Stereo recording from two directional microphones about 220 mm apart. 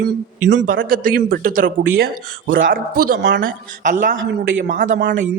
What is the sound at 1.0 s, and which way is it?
Speech, 40° right (ahead or behind).